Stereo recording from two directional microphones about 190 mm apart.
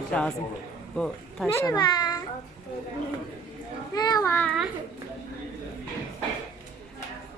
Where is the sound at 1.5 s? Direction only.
15° left (ahead or behind).